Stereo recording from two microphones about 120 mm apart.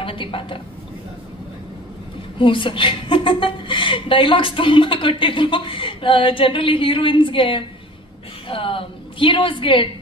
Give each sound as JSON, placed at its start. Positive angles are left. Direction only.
{"t": 0.0, "sound": "a woman's voice", "side_deg": 45}
{"t": 2.3, "sound": "a woman's voice", "side_deg": 45}